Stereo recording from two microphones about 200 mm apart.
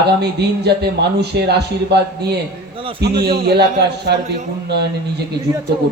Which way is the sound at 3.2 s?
50° right (ahead or behind).